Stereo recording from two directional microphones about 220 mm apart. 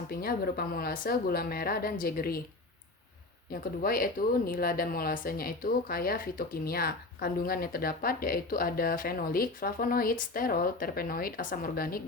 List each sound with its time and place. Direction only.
0.1 s speech: 45° left (ahead or behind)
3.5 s speech: 40° left (ahead or behind)